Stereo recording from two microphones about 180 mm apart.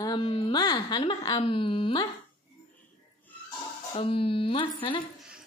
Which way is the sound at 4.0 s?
30° left (ahead or behind).